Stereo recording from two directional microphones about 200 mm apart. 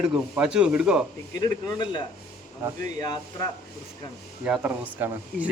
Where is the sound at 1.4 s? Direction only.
20° left (ahead or behind).